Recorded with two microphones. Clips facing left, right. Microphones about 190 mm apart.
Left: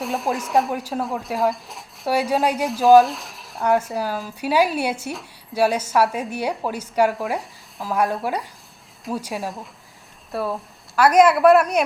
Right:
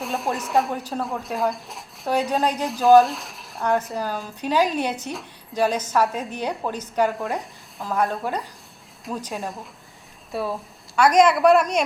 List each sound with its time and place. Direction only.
0.0 s a woman's voice: centre (ahead or behind)